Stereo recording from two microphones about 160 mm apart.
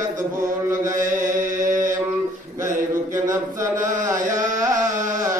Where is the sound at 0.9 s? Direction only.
55° right (ahead or behind).